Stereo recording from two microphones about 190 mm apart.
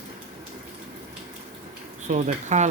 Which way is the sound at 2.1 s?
35° right (ahead or behind).